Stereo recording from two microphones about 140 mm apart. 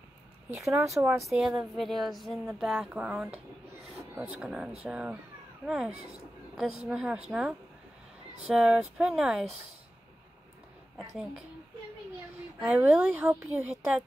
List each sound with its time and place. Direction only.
0.7 s speech: 20° right (ahead or behind)
1.3 s a woman's voice: 5° right (ahead or behind)
4.0 s a sound: 20° right (ahead or behind)
4.4 s a woman's voice: 5° right (ahead or behind)
6.5 s a woman's voice: 5° right (ahead or behind)
12.5 s a woman's voice: 10° right (ahead or behind)